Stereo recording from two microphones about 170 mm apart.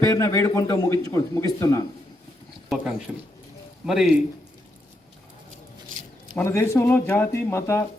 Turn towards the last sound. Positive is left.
turn(degrees=15)  # may be behind; listen again after turning